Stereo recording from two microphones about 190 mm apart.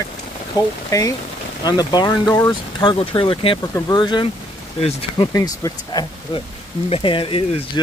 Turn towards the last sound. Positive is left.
turn(degrees=30)  # may be behind; listen again after turning